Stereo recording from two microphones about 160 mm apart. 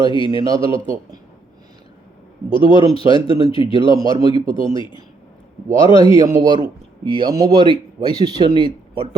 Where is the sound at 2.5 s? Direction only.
35° left (ahead or behind).